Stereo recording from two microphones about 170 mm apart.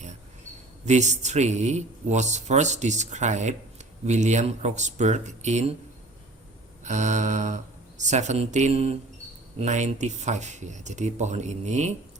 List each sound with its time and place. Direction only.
0.9 s a man's voice: 45° right (ahead or behind)
6.8 s a man's voice: 45° right (ahead or behind)